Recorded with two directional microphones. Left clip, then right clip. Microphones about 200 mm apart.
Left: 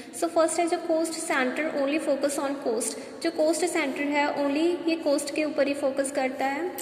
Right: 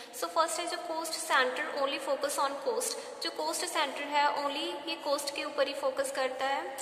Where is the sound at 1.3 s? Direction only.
15° left (ahead or behind).